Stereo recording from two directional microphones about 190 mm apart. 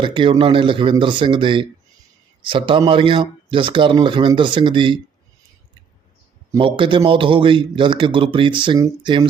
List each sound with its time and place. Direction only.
0.0 s speech: 25° right (ahead or behind)
6.6 s speech: 25° right (ahead or behind)